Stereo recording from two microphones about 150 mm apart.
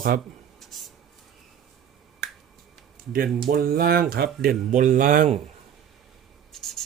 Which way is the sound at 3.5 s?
85° right.